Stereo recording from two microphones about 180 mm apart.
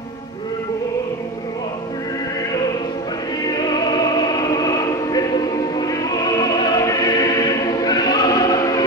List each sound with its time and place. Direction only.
3.4 s music: 25° left (ahead or behind)